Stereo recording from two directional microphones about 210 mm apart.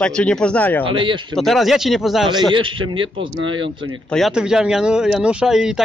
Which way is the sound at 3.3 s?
65° right (ahead or behind).